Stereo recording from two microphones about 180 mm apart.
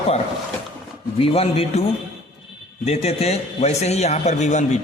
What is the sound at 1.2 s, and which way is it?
Speech, 30° left (ahead or behind).